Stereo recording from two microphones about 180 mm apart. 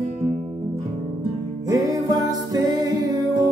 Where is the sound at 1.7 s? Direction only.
20° right (ahead or behind).